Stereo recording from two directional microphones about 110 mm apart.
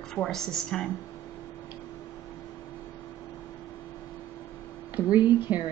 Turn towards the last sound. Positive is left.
turn(degrees=-15)  # may be behind; listen again after turning